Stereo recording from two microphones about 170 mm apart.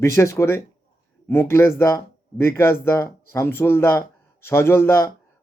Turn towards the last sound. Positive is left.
turn(degrees=15)  # may be behind; listen again after turning